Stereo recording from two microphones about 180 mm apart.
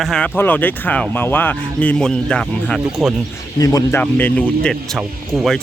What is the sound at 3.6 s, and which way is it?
Speech, 20° left (ahead or behind).